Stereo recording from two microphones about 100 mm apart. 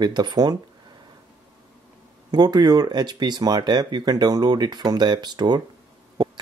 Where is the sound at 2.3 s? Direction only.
45° right (ahead or behind).